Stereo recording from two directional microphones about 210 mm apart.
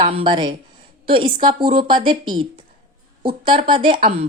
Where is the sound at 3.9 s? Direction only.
35° right (ahead or behind).